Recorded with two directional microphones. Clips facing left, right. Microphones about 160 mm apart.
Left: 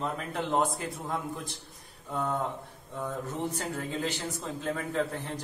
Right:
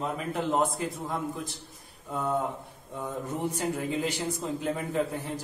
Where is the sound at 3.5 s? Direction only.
10° right (ahead or behind).